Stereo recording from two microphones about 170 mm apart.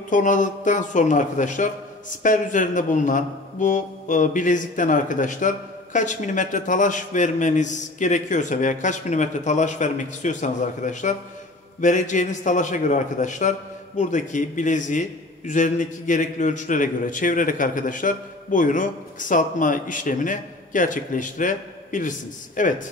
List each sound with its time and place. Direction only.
0.1 s a man's voice: 50° left (ahead or behind)